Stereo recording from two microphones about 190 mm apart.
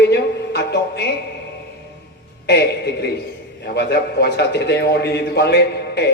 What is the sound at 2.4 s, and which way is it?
A man's voice, 60° left (ahead or behind).